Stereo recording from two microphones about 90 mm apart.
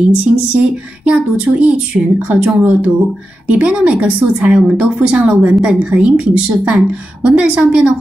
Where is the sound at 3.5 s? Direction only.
10° right (ahead or behind).